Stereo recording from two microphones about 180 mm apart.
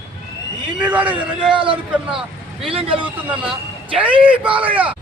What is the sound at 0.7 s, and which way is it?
Speech, 10° right (ahead or behind).